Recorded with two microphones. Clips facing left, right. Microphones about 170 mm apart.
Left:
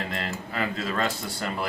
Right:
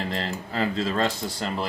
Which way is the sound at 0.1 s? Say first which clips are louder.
Right 2 dB; 30° right (ahead or behind).